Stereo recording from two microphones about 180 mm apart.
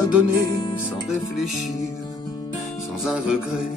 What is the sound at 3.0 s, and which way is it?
Music, 5° right (ahead or behind).